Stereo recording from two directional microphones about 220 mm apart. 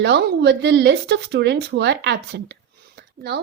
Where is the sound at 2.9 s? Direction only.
50° right (ahead or behind).